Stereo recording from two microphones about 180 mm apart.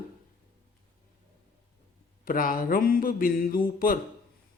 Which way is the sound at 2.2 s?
50° left (ahead or behind).